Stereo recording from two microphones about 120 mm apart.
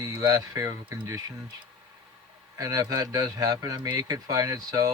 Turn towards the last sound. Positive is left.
turn(degrees=-30)  # may be behind; listen again after turning